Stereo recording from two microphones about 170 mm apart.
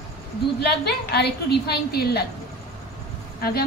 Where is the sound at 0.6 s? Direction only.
75° left (ahead or behind).